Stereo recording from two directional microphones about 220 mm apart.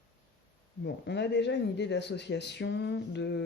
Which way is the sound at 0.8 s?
50° left (ahead or behind).